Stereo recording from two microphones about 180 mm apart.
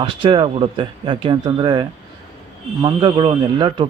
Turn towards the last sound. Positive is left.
turn(degrees=-25)  # may be behind; listen again after turning